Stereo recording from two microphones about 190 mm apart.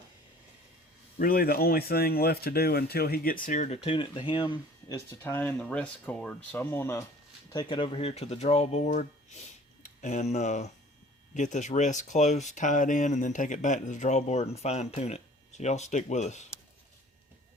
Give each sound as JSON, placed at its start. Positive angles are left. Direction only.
{"t": 1.2, "sound": "speech", "side_deg": 50}
{"t": 3.4, "sound": "speech", "side_deg": 40}
{"t": 3.8, "sound": "speech", "side_deg": 30}
{"t": 5.2, "sound": "speech", "side_deg": 10}